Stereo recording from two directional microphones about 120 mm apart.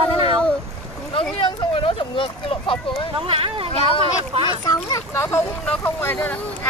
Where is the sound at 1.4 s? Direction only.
50° left (ahead or behind).